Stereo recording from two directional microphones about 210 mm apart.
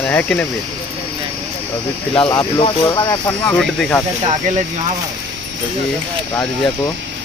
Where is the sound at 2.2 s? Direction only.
5° left (ahead or behind).